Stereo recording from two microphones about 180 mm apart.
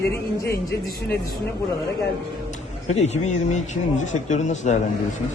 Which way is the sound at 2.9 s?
40° left (ahead or behind).